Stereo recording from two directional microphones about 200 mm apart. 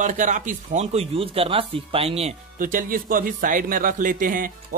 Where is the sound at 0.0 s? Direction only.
40° right (ahead or behind).